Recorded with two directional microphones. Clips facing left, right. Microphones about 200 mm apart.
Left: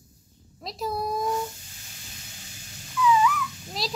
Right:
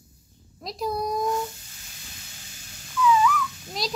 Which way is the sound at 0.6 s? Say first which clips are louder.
Right 2 dB; centre (ahead or behind).